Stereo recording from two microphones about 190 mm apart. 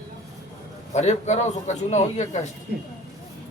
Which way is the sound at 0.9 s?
35° left (ahead or behind).